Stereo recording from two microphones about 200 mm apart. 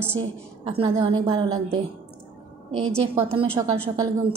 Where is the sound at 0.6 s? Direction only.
30° right (ahead or behind).